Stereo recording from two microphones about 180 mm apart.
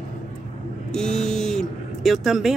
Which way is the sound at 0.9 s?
5° left (ahead or behind).